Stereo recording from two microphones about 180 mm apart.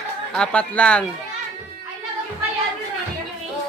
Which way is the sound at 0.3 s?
5° left (ahead or behind).